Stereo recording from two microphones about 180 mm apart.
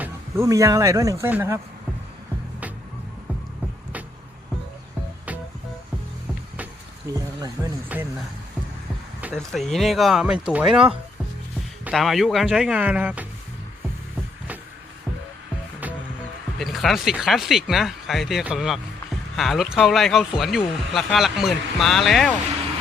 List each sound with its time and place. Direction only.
0.0 s speech: 15° right (ahead or behind)
7.1 s speech: 20° right (ahead or behind)
9.3 s speech: centre (ahead or behind)
16.6 s speech: centre (ahead or behind)